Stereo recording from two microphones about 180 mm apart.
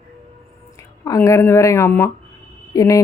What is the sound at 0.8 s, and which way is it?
Speech, 15° left (ahead or behind).